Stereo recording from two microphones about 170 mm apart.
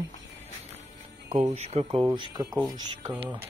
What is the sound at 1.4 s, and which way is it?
Speech, 40° right (ahead or behind).